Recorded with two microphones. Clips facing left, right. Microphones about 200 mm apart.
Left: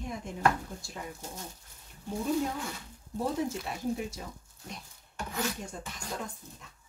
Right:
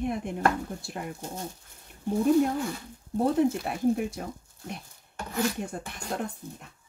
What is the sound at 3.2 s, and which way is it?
Speech, 60° right (ahead or behind).